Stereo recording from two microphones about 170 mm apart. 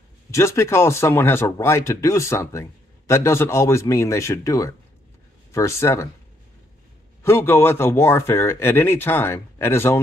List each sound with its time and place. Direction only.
0.3 s a man's voice: 15° left (ahead or behind)
7.2 s a man's voice: 15° left (ahead or behind)